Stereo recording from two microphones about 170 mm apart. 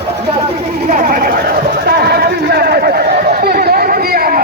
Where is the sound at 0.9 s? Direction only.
50° right (ahead or behind).